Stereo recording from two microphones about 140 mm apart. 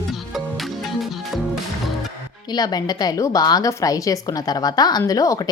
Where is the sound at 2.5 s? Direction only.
30° left (ahead or behind).